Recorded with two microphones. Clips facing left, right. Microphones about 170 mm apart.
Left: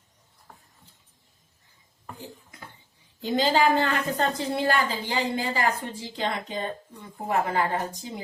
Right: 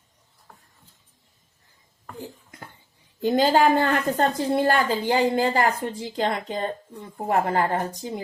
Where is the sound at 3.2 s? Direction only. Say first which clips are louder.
Right 4 dB; 50° right (ahead or behind).